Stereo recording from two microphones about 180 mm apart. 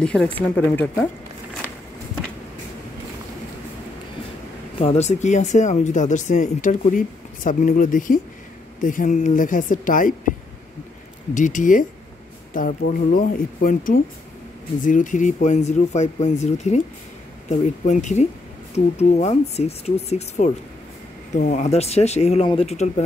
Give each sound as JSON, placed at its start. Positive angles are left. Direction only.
{"t": 0.0, "sound": "speech", "side_deg": 5}
{"t": 4.7, "sound": "a woman's voice", "side_deg": 35}
{"t": 11.3, "sound": "a woman's voice", "side_deg": 45}
{"t": 21.5, "sound": "speech", "side_deg": 35}